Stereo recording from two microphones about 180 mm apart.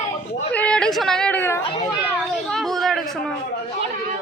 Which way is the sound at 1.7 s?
20° left (ahead or behind).